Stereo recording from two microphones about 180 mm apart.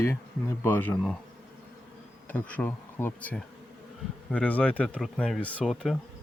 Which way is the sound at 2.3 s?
10° left (ahead or behind).